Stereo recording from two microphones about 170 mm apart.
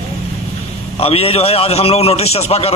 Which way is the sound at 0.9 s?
35° left (ahead or behind).